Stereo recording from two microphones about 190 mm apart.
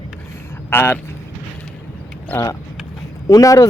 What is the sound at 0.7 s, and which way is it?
Speech, 10° left (ahead or behind).